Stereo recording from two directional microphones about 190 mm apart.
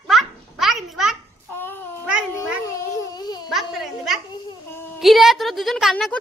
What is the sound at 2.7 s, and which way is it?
Baby cry, 20° left (ahead or behind).